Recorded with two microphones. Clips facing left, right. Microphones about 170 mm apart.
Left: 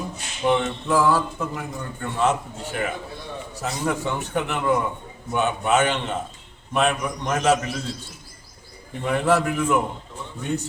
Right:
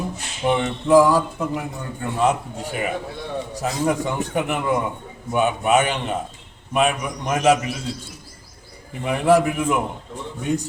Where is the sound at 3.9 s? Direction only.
15° right (ahead or behind).